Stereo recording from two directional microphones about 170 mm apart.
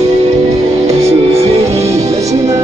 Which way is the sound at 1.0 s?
40° right (ahead or behind).